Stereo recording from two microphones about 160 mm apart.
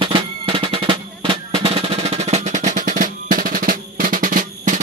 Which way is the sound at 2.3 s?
50° right (ahead or behind).